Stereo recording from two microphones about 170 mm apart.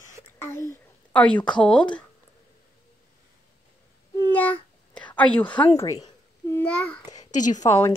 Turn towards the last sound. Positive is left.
turn(degrees=15)  # may be behind; listen again after turning